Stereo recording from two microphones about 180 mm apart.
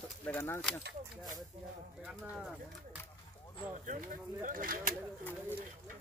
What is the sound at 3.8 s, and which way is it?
Speech, 45° right (ahead or behind).